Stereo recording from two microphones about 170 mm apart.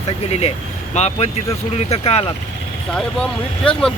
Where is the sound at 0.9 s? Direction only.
40° left (ahead or behind).